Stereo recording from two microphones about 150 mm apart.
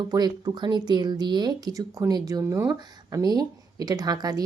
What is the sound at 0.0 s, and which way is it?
A woman's voice, 25° right (ahead or behind).